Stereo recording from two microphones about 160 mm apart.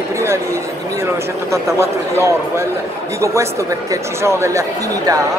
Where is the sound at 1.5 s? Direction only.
15° right (ahead or behind).